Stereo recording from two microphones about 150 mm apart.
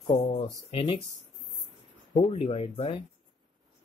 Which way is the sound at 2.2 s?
40° left (ahead or behind).